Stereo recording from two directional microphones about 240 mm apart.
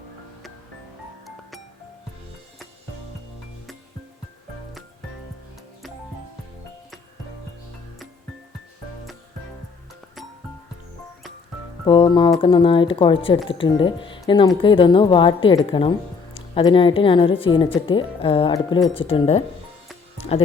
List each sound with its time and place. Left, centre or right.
1.2 s music: centre
11.9 s speech: centre